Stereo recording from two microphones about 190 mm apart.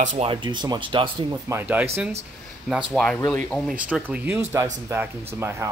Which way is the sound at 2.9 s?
5° left (ahead or behind).